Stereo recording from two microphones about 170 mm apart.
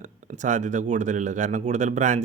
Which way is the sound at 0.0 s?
45° right (ahead or behind).